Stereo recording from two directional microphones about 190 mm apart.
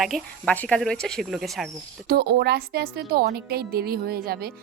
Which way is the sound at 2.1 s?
55° right (ahead or behind).